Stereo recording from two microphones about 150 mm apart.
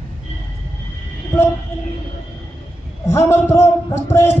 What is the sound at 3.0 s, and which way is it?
Speech, 20° left (ahead or behind).